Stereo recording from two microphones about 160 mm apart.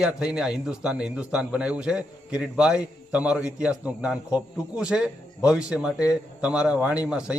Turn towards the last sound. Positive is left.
turn(degrees=-5)  # may be behind; listen again after turning